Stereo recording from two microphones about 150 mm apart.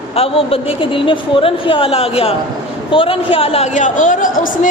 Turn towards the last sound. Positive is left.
turn(degrees=60)  # may be behind; listen again after turning